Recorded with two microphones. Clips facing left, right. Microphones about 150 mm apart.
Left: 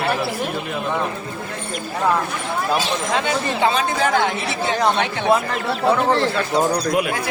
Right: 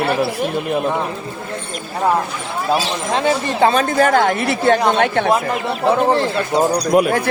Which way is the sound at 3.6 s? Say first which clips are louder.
Right 6 dB; 45° right (ahead or behind).